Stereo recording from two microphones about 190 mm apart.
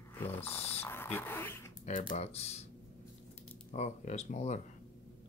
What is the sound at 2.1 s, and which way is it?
Speech, 35° left (ahead or behind).